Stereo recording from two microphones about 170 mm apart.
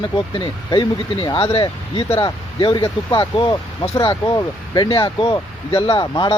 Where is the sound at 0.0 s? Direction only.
30° left (ahead or behind).